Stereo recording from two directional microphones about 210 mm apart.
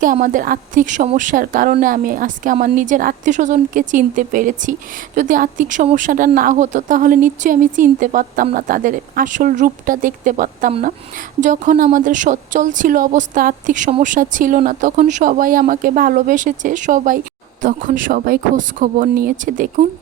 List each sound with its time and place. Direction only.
0.0 s speech: 40° right (ahead or behind)